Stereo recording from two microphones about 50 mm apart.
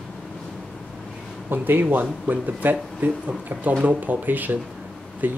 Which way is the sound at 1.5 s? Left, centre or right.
Right.